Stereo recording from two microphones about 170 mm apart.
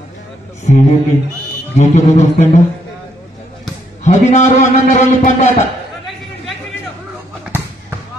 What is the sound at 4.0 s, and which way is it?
A man's voice, 45° left (ahead or behind).